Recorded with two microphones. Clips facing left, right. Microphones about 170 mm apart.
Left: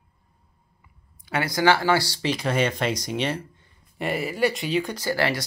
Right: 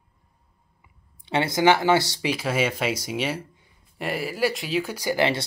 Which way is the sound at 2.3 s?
5° right (ahead or behind).